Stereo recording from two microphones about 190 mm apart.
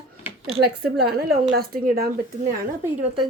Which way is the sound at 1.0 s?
55° right (ahead or behind).